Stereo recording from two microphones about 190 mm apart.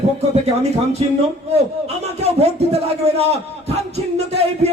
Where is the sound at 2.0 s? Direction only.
35° right (ahead or behind).